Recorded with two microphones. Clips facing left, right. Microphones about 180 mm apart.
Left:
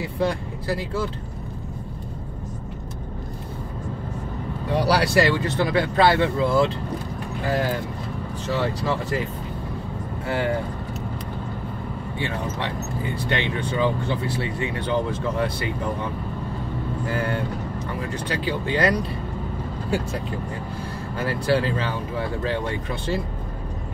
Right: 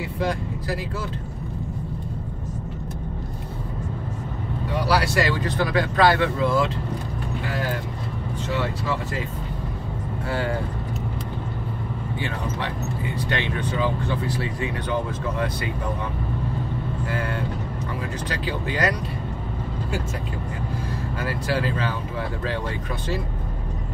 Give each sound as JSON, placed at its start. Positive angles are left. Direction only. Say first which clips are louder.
{"t": 0.2, "sound": "speech", "louder": "left 2 dB", "side_deg": 30}
{"t": 4.7, "sound": "speech", "louder": "left 3 dB", "side_deg": 35}
{"t": 12.2, "sound": "speech", "louder": "left 2 dB", "side_deg": 25}
{"t": 17.1, "sound": "speech", "louder": "left 3 dB", "side_deg": 30}
{"t": 18.4, "sound": "speech", "louder": "left 3 dB", "side_deg": 30}
{"t": 21.2, "sound": "speech", "louder": "left 4 dB", "side_deg": 25}